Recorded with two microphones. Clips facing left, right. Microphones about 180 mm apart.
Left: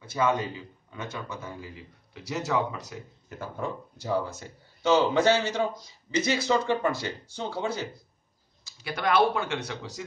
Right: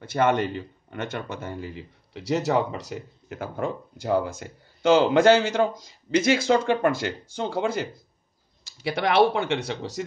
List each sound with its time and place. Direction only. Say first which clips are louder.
0.0 s speech: right 4 dB; 75° right (ahead or behind)
7.3 s speech: right 6 dB; 50° right (ahead or behind)
8.8 s speech: right 4 dB; 70° right (ahead or behind); by 10.0 s 90° right